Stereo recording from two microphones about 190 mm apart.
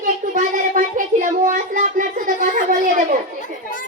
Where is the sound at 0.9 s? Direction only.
45° right (ahead or behind).